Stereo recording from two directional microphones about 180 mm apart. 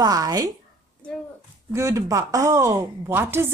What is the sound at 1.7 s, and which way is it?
Speech, 15° right (ahead or behind).